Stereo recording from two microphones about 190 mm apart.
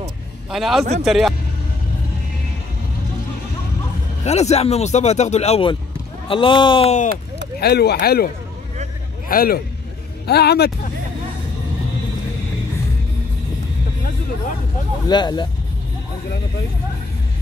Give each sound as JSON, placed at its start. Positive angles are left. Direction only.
{"t": 0.5, "sound": "a man's voice", "side_deg": 0}
{"t": 4.2, "sound": "speech", "side_deg": 35}
{"t": 7.6, "sound": "speech", "side_deg": 60}
{"t": 9.3, "sound": "a man's voice", "side_deg": 50}
{"t": 15.0, "sound": "speech", "side_deg": 20}